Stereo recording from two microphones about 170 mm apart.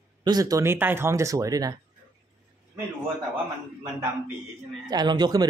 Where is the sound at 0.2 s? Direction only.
20° right (ahead or behind).